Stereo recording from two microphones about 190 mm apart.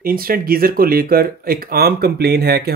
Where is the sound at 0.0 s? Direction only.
50° right (ahead or behind).